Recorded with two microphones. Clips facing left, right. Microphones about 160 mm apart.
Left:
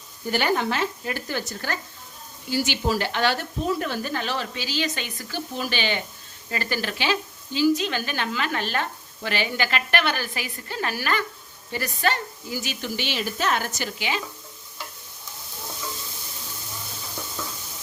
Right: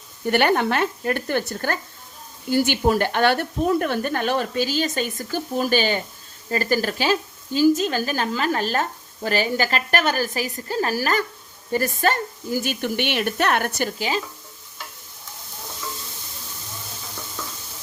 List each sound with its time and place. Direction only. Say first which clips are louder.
0.3 s speech: right 5 dB; 60° right (ahead or behind)